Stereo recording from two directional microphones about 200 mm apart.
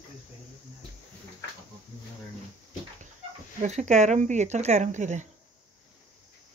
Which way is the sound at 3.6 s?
35° right (ahead or behind).